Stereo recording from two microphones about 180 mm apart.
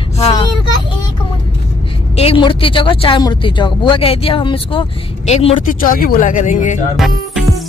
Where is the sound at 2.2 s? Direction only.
30° left (ahead or behind).